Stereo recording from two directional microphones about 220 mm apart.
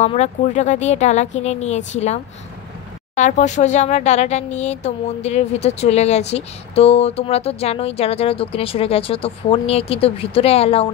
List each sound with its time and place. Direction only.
0.0 s speech: 30° left (ahead or behind)
3.2 s speech: 35° left (ahead or behind)